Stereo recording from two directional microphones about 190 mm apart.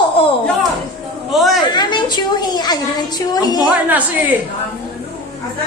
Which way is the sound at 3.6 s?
10° right (ahead or behind).